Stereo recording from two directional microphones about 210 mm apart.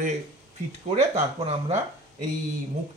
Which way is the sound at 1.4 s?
30° right (ahead or behind).